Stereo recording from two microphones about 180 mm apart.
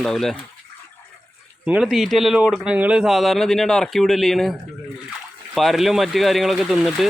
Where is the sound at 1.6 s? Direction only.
5° right (ahead or behind).